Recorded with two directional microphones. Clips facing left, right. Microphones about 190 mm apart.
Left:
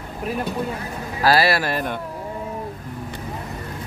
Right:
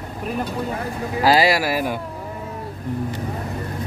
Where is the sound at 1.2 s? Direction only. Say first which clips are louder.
Right 1 dB; 15° right (ahead or behind).